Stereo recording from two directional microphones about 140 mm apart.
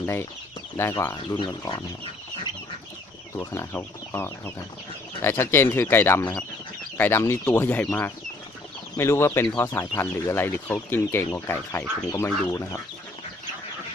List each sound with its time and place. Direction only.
0.0 s speech: 15° left (ahead or behind)
1.1 s speech: 30° left (ahead or behind)
3.3 s speech: 20° left (ahead or behind)